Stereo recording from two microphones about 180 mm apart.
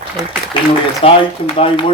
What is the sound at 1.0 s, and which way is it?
Speech, 30° left (ahead or behind).